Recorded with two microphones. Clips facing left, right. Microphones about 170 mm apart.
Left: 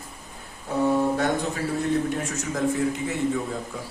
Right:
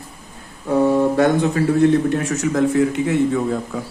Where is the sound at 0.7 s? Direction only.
75° right (ahead or behind).